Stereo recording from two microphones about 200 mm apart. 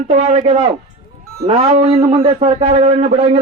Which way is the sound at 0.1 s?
30° right (ahead or behind).